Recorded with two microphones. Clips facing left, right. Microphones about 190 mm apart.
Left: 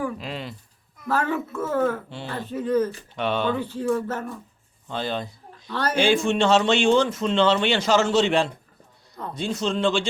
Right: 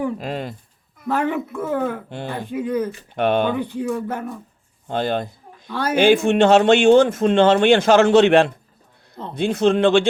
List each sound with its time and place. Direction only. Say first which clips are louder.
0.2 s speech: right 6 dB; 50° right (ahead or behind)
1.0 s speech: right 3 dB; 15° right (ahead or behind)
2.0 s speech: right 5 dB; 55° right (ahead or behind)
2.3 s speech: even; 15° right (ahead or behind)
3.2 s speech: right 6 dB; 55° right (ahead or behind)
3.5 s speech: right 1 dB; 15° right (ahead or behind)
4.9 s a sound: right 6 dB; 55° right (ahead or behind)
5.6 s speech: right 3 dB; 10° right (ahead or behind)
6.0 s speech: right 6 dB; 60° right (ahead or behind)